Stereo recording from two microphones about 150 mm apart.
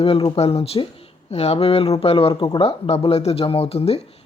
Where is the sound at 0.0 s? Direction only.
40° left (ahead or behind).